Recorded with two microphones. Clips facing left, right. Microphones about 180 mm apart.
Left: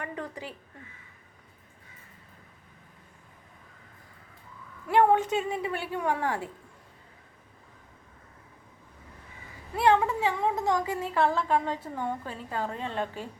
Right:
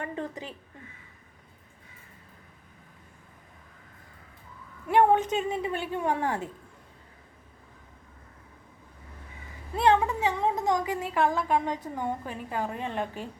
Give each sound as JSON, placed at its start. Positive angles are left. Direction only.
{"t": 0.0, "sound": "a woman's voice", "side_deg": -25}
{"t": 4.9, "sound": "a woman's voice", "side_deg": -20}
{"t": 9.7, "sound": "a woman's voice", "side_deg": -20}